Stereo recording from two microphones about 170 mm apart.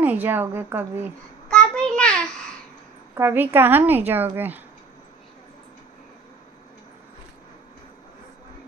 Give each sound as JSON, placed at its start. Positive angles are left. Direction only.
{"t": 0.0, "sound": "a woman's voice", "side_deg": -10}
{"t": 1.5, "sound": "child singing", "side_deg": 5}
{"t": 3.2, "sound": "a woman's voice", "side_deg": -15}